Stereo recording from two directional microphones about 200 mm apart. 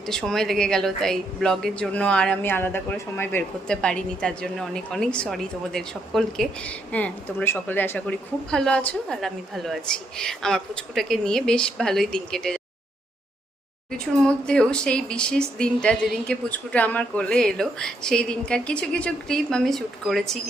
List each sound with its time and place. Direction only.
0.0 s a woman's voice: centre (ahead or behind)
13.9 s a woman's voice: 5° left (ahead or behind)